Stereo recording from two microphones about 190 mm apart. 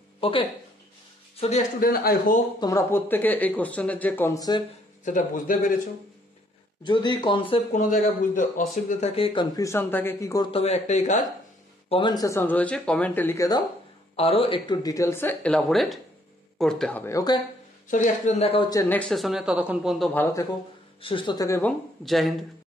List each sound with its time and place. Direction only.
0.2 s speech: 30° left (ahead or behind); by 2.4 s 50° left (ahead or behind)
2.6 s speech: 15° left (ahead or behind)
5.0 s speech: 45° left (ahead or behind)
6.8 s speech: 25° left (ahead or behind)
7.7 s speech: 45° left (ahead or behind); by 10.5 s 15° left (ahead or behind)
10.5 s speech: 35° left (ahead or behind)
11.9 s speech: 25° left (ahead or behind)
14.1 s speech: 30° left (ahead or behind)
17.8 s speech: 40° left (ahead or behind); by 20.1 s 5° right (ahead or behind)
21.0 s speech: 25° left (ahead or behind); by 22.3 s centre (ahead or behind)